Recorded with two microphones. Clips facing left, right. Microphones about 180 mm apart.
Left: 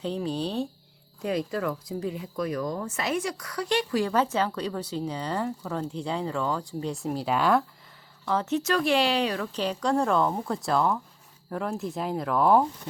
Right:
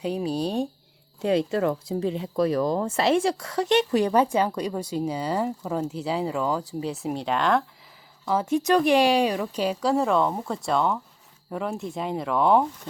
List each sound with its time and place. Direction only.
0.0 s a woman's voice: 10° right (ahead or behind)
1.2 s a woman's voice: 25° right (ahead or behind); by 7.6 s 5° left (ahead or behind)
8.2 s a woman's voice: 10° right (ahead or behind)